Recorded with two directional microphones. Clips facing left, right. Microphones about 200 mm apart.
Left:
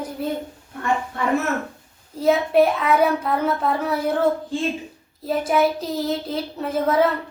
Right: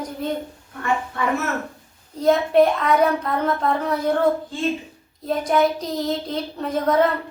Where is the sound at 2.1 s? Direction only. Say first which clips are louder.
Right 1 dB; 5° left (ahead or behind).